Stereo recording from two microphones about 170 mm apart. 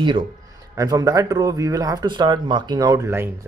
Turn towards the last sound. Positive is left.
turn(degrees=-15)  # may be behind; listen again after turning